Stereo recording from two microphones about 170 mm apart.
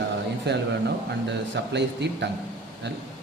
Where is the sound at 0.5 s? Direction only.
80° right.